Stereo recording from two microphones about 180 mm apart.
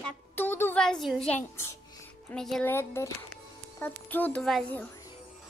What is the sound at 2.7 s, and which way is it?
Speech, 15° left (ahead or behind).